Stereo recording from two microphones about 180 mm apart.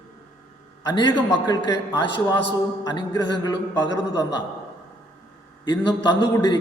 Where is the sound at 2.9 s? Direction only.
25° left (ahead or behind).